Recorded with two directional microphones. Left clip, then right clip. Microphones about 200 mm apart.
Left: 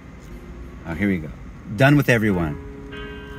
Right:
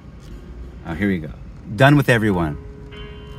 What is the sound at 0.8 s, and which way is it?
Speech, 20° right (ahead or behind).